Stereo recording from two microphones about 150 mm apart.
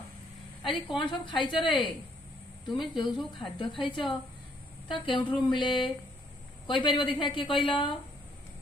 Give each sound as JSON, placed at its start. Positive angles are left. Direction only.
{"t": 0.7, "sound": "a woman's voice", "side_deg": 30}